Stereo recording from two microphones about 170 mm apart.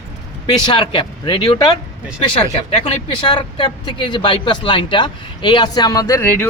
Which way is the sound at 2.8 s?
30° left (ahead or behind).